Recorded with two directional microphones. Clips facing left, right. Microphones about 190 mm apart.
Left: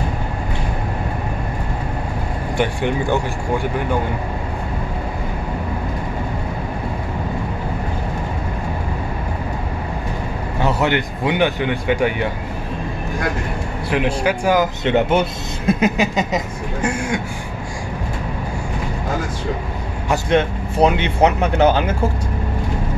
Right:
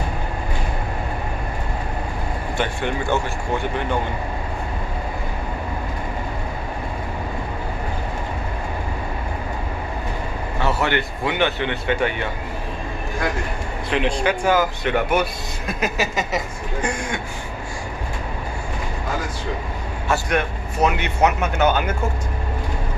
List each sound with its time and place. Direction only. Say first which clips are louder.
2.5 s speech: left 5 dB; 15° left (ahead or behind)
10.6 s speech: left 3 dB; 15° left (ahead or behind)
13.8 s speech: left 2 dB; 10° left (ahead or behind)
16.8 s speech: left 5 dB; 10° left (ahead or behind)
20.1 s speech: left 4 dB; 25° left (ahead or behind)